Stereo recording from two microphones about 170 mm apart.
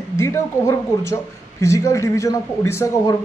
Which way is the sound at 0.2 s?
15° left (ahead or behind).